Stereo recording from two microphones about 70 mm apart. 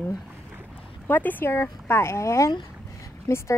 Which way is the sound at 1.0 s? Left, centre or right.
Left.